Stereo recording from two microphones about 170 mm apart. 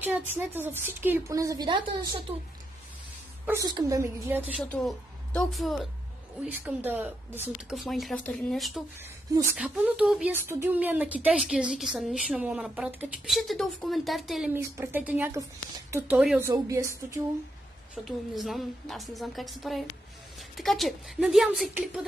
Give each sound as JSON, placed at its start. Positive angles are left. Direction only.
{"t": 0.3, "sound": "speech", "side_deg": -10}
{"t": 3.4, "sound": "speech", "side_deg": -20}
{"t": 4.6, "sound": "a woman's voice", "side_deg": 5}
{"t": 6.6, "sound": "a woman's voice", "side_deg": -10}
{"t": 10.3, "sound": "a woman's voice", "side_deg": -15}
{"t": 14.5, "sound": "speech", "side_deg": -15}
{"t": 18.0, "sound": "a woman's voice", "side_deg": 0}